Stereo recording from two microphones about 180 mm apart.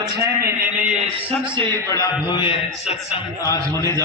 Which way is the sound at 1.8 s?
20° left (ahead or behind).